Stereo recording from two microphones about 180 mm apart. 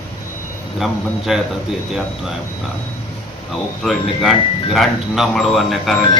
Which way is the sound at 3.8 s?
Centre (ahead or behind).